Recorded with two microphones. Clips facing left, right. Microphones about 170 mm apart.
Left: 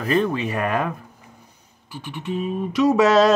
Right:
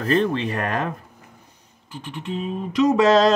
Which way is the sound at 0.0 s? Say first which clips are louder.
Even; 10° left (ahead or behind).